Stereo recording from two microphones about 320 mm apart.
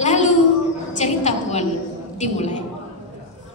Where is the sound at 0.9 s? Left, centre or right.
Left.